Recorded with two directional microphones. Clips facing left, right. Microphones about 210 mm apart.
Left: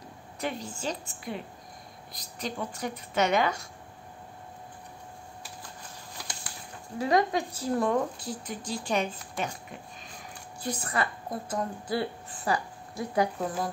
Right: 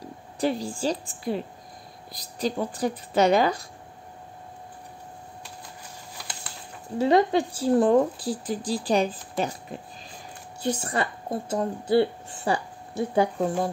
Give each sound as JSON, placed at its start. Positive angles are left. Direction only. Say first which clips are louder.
{"t": 0.4, "sound": "speech", "louder": "right 8 dB", "side_deg": -35}
{"t": 7.0, "sound": "speech", "louder": "right 5 dB", "side_deg": -30}
{"t": 10.6, "sound": "a woman's voice", "louder": "right 4 dB", "side_deg": -25}